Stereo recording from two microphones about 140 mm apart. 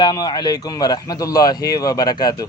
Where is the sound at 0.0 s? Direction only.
25° left (ahead or behind).